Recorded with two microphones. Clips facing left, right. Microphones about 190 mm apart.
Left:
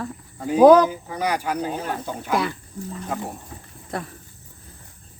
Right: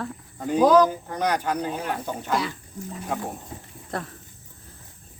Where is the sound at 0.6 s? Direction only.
60° left (ahead or behind).